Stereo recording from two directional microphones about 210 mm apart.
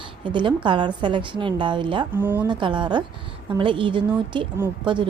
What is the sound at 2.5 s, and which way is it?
A woman's voice, 20° right (ahead or behind).